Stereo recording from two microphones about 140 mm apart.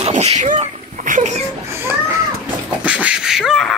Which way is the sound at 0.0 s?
50° right (ahead or behind).